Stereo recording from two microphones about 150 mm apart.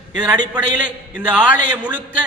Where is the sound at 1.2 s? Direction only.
10° right (ahead or behind).